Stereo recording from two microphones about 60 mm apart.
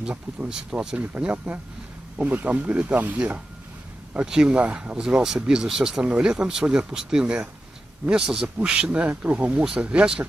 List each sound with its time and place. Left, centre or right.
0.5 s speech: centre
0.9 s speech: right